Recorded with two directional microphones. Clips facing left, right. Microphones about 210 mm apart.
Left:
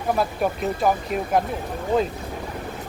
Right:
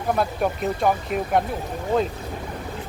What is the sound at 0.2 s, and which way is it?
Speech, centre (ahead or behind).